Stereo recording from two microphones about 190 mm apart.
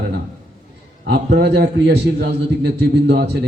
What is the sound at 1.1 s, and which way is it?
A man's voice, 60° right (ahead or behind).